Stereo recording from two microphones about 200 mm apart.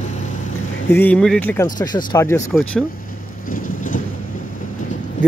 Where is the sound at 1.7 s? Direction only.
20° left (ahead or behind).